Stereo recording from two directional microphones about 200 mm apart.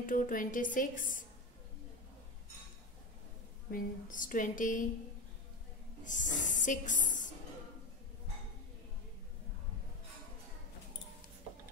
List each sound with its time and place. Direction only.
0.0 s a woman's voice: 40° left (ahead or behind)
3.7 s a woman's voice: 40° left (ahead or behind)
6.0 s a woman's voice: 40° left (ahead or behind)